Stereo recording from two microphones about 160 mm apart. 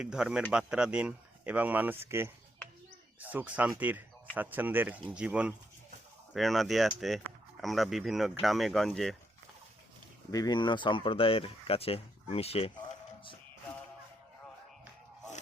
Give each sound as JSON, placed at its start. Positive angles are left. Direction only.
{"t": 0.0, "sound": "speech", "side_deg": -5}
{"t": 10.3, "sound": "speech", "side_deg": 25}